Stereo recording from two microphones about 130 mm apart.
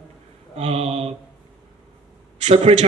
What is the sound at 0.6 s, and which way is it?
Speech, 50° right (ahead or behind).